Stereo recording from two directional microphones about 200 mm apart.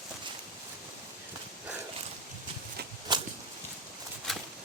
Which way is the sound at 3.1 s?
20° right (ahead or behind).